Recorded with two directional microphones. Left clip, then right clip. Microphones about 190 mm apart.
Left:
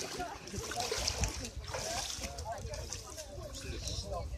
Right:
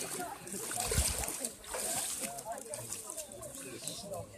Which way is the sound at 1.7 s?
30° right (ahead or behind).